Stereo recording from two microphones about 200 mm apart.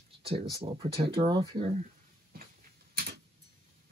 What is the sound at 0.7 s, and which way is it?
Speech, 30° right (ahead or behind).